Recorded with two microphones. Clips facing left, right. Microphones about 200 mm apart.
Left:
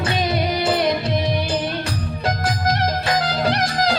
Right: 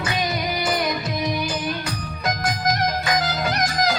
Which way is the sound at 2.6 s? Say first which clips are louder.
Left 1 dB; 30° left (ahead or behind).